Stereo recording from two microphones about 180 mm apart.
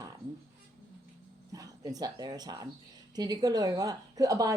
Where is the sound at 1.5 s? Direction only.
20° right (ahead or behind).